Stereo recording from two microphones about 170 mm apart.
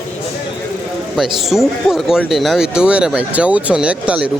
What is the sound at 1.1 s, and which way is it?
Speech, centre (ahead or behind).